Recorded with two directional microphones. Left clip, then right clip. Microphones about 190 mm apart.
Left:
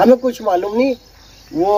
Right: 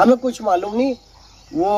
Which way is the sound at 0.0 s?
5° right (ahead or behind).